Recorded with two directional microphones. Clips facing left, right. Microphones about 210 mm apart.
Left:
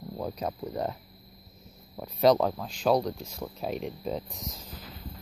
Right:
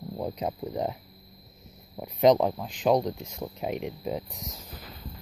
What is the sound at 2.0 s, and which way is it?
Speech, 15° right (ahead or behind).